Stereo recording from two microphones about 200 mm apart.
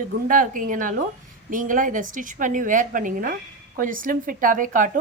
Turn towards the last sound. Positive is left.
turn(degrees=-40)  # may be behind; listen again after turning